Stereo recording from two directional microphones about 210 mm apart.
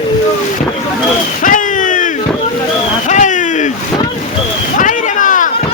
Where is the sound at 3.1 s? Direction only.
35° left (ahead or behind).